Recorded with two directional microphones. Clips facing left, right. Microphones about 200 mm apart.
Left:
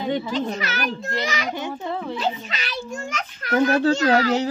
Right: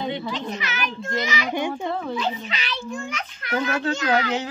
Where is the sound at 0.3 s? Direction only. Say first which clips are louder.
Left 4 dB; 40° left (ahead or behind).